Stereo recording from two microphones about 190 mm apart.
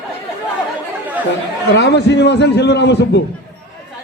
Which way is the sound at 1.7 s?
65° left (ahead or behind).